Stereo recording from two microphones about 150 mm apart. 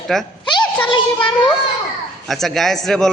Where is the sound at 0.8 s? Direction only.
35° left (ahead or behind).